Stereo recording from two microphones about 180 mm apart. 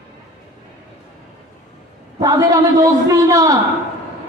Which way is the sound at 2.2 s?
20° right (ahead or behind).